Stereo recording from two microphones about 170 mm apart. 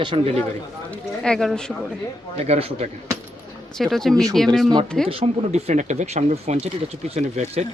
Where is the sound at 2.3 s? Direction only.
40° right (ahead or behind).